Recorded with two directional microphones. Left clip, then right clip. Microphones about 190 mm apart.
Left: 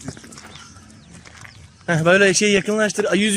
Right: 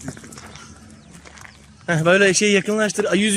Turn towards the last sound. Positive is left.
turn(degrees=-5)  # may be behind; listen again after turning